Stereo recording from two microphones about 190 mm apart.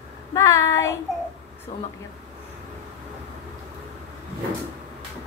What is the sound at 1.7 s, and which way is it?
Speech, 40° left (ahead or behind).